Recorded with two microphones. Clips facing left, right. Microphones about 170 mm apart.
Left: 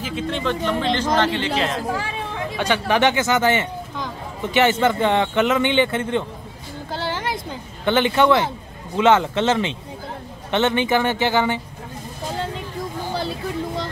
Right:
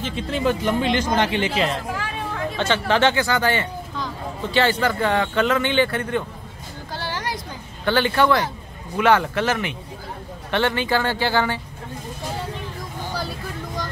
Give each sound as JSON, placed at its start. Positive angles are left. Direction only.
{"t": 0.0, "sound": "speech", "side_deg": 0}
{"t": 2.5, "sound": "speech", "side_deg": 15}
{"t": 6.9, "sound": "a sound", "side_deg": 20}
{"t": 8.9, "sound": "speech", "side_deg": 20}
{"t": 13.1, "sound": "vehicle", "side_deg": 25}